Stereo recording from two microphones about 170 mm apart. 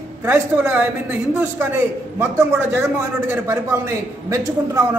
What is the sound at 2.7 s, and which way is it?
A man's voice, 15° right (ahead or behind).